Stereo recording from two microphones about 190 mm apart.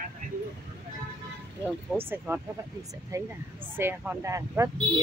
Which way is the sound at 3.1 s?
15° right (ahead or behind).